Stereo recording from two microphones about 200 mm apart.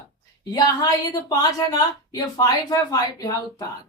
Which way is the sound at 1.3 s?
20° left (ahead or behind).